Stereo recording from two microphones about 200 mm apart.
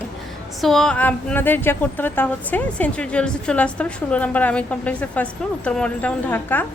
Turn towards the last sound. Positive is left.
turn(degrees=10)  # may be behind; listen again after turning